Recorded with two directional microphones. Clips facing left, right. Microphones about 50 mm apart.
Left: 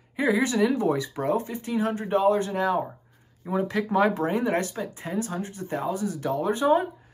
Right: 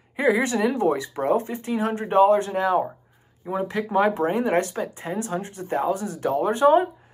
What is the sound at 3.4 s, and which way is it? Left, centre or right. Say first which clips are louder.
Speech: even; centre.